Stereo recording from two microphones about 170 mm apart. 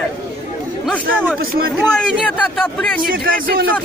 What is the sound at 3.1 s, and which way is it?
Speech, 60° right (ahead or behind).